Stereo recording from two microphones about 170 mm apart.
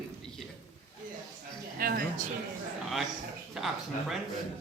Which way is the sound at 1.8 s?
60° right (ahead or behind).